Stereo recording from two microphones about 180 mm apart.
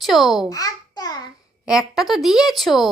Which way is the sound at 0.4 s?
20° left (ahead or behind).